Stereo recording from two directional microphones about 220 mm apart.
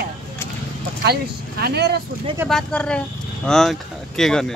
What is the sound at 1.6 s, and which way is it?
Speech, 50° right (ahead or behind).